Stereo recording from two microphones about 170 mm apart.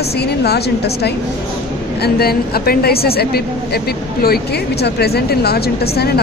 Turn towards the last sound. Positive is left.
turn(degrees=70)  # may be behind; listen again after turning